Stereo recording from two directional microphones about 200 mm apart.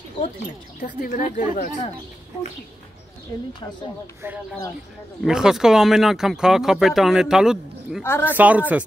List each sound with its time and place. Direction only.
0.7 s speech: 40° left (ahead or behind)
5.2 s speech: 5° right (ahead or behind)
8.0 s speech: 10° left (ahead or behind)
8.4 s a woman's voice: 10° right (ahead or behind)